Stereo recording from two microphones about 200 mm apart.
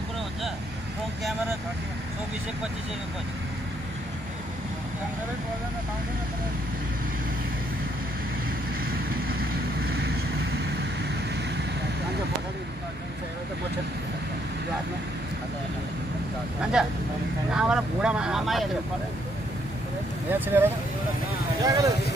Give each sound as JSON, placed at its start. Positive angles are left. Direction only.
{"t": 16.8, "sound": "vehicle", "side_deg": -5}
{"t": 20.2, "sound": "vehicle", "side_deg": -10}
{"t": 21.6, "sound": "vehicle", "side_deg": -15}